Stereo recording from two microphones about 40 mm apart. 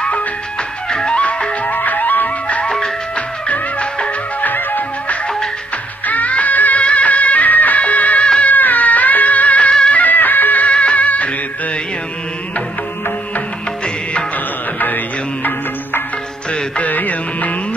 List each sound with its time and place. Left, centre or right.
0.8 s music: left
1.6 s music: left
2.4 s music: left
4.4 s music: left
10.7 s music: left
16.7 s music: left